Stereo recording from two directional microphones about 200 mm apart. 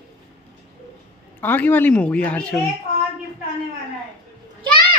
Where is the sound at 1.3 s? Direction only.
10° left (ahead or behind).